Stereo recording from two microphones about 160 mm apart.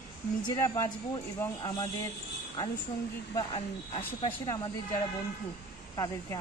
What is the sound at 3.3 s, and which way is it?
Speech, 35° left (ahead or behind).